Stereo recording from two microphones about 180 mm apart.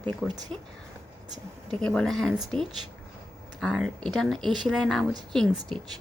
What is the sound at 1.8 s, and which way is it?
A woman's voice, 5° left (ahead or behind).